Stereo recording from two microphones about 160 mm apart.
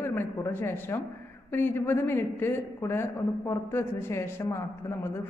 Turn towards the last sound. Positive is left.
turn(degrees=15)  # may be behind; listen again after turning